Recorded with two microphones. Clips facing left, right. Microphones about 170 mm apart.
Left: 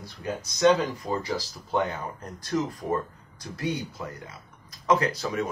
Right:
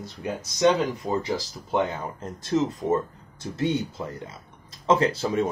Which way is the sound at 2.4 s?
25° right (ahead or behind).